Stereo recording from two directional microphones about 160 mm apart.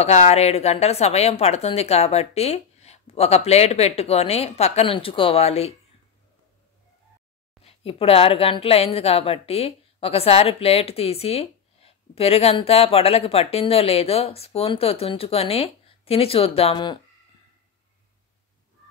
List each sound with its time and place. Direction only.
0.0 s a woman's voice: 45° left (ahead or behind)
7.6 s a woman's voice: 35° left (ahead or behind)